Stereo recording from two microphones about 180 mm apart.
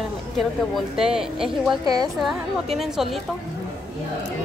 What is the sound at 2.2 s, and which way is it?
A woman's voice, centre (ahead or behind).